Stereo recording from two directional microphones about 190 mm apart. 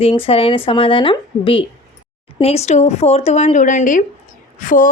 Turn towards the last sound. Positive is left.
turn(degrees=45)  # may be behind; listen again after turning